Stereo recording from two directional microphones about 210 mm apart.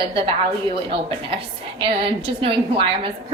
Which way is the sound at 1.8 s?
25° right (ahead or behind).